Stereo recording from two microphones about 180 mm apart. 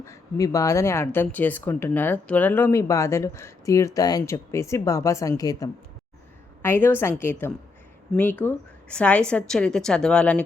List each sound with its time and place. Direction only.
0.0 s a woman's voice: 15° left (ahead or behind)